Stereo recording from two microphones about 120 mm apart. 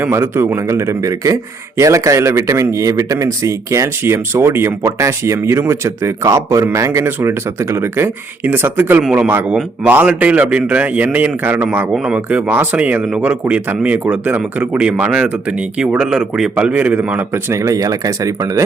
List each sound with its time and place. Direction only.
0.0 s a man's voice: 20° right (ahead or behind)